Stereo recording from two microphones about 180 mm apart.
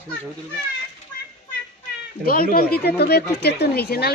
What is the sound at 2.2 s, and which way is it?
Speech, 55° left (ahead or behind).